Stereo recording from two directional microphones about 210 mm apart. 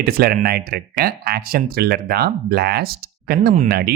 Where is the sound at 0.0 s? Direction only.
45° right (ahead or behind).